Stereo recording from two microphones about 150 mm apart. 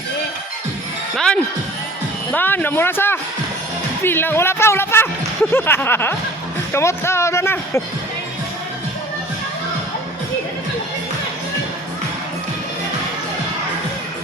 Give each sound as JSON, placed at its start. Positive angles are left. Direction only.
{"t": 1.1, "sound": "music", "side_deg": 5}
{"t": 2.3, "sound": "speech", "side_deg": 10}